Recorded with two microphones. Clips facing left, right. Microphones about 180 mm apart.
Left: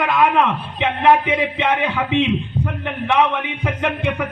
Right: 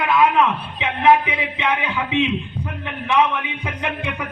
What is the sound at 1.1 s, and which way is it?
Speech, 55° left (ahead or behind).